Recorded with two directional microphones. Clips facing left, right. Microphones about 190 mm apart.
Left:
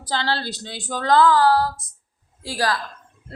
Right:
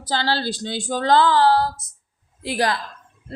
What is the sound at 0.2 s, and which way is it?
A woman's voice, 30° right (ahead or behind).